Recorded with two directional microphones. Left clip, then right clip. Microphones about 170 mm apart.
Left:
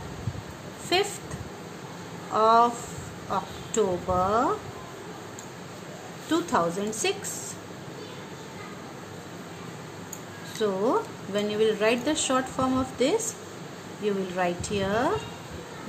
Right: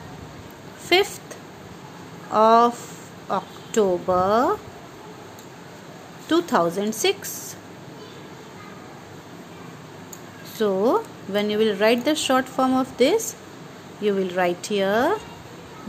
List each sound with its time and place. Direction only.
0.9 s a woman's voice: 50° right (ahead or behind)
2.3 s a woman's voice: 50° right (ahead or behind)
6.3 s a woman's voice: 50° right (ahead or behind)
10.6 s a woman's voice: 50° right (ahead or behind)